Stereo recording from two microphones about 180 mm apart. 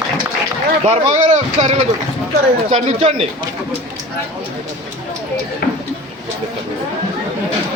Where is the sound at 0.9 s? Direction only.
40° right (ahead or behind).